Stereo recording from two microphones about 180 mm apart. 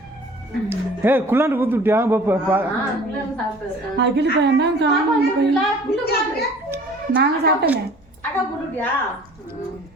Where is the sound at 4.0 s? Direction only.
70° right (ahead or behind).